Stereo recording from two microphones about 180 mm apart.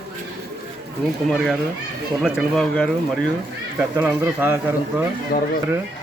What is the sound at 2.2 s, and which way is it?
Speech, 5° right (ahead or behind).